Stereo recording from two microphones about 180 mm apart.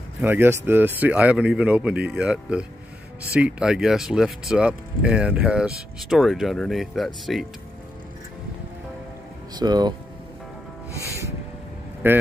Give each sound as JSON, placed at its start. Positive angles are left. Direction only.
{"t": 0.2, "sound": "speech", "side_deg": -10}
{"t": 9.6, "sound": "speech", "side_deg": -25}
{"t": 12.0, "sound": "speech", "side_deg": -10}